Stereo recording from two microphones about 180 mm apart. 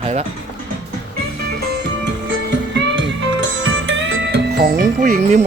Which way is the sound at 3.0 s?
90° right.